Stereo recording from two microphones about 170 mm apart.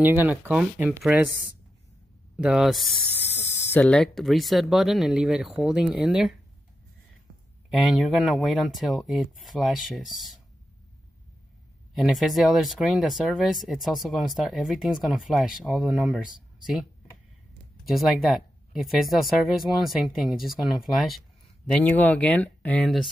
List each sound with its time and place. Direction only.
0.0 s speech: 10° right (ahead or behind)
2.3 s speech: 5° right (ahead or behind)
3.3 s a sound: 15° left (ahead or behind)
3.7 s speech: 5° left (ahead or behind)
7.7 s speech: centre (ahead or behind)
11.9 s speech: centre (ahead or behind)
17.8 s speech: centre (ahead or behind)
21.6 s speech: 10° left (ahead or behind)